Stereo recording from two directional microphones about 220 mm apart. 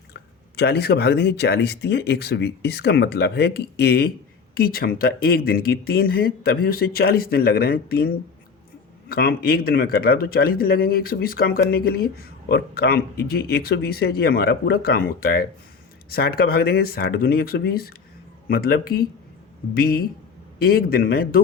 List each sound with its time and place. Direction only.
0.1 s speech: 45° left (ahead or behind)